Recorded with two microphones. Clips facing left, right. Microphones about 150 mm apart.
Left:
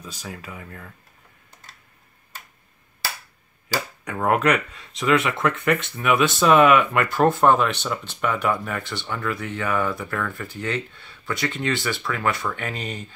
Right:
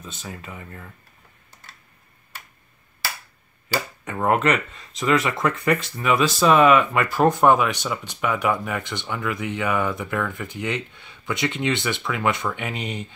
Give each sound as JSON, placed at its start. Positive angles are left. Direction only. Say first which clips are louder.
{"t": 0.2, "sound": "speech", "louder": "left 1 dB", "side_deg": 0}
{"t": 4.0, "sound": "speech", "louder": "even", "side_deg": 0}
{"t": 7.2, "sound": "speech", "louder": "right 1 dB", "side_deg": -15}